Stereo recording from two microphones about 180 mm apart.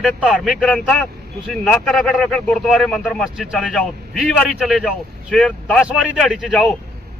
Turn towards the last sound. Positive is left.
turn(degrees=0)  # may be behind; listen again after turning